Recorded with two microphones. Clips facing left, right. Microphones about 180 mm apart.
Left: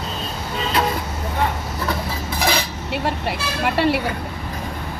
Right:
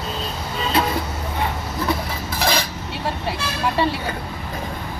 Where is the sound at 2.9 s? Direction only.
70° left (ahead or behind).